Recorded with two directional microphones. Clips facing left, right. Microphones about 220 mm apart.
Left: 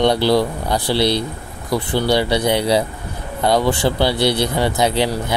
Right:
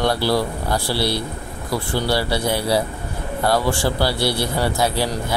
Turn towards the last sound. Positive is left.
turn(degrees=20)  # may be behind; listen again after turning